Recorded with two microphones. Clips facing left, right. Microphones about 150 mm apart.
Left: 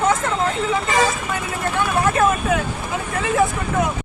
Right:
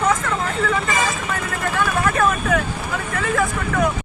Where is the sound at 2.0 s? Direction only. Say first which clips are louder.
Left 3 dB; 25° left (ahead or behind).